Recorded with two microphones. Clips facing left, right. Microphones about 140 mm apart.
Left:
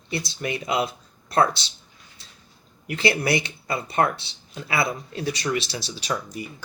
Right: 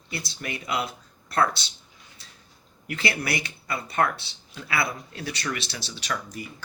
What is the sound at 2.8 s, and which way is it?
Speech, 20° left (ahead or behind).